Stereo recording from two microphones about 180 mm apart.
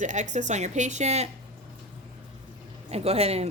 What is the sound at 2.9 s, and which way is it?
Speech, 35° right (ahead or behind).